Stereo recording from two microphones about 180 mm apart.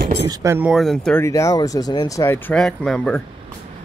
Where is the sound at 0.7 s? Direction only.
Centre (ahead or behind).